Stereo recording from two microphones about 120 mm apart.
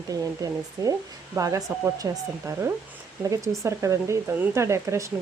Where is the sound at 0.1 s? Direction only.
30° right (ahead or behind).